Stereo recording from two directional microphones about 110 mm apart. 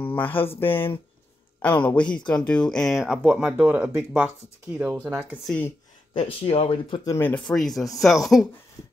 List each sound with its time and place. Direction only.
0.0 s speech: 15° left (ahead or behind); by 3.2 s centre (ahead or behind)
3.3 s speech: 15° right (ahead or behind)
6.1 s speech: 55° left (ahead or behind)
7.1 s speech: 20° left (ahead or behind)
7.3 s speech: 5° left (ahead or behind)